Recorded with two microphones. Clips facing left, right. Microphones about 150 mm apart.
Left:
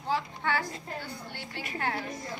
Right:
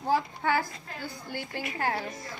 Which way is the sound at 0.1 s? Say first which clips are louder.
Right 4 dB; 40° right (ahead or behind).